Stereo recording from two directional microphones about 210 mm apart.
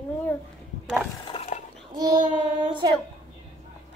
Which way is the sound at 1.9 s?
20° right (ahead or behind).